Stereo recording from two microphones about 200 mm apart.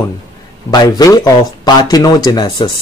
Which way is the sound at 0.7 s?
20° left (ahead or behind).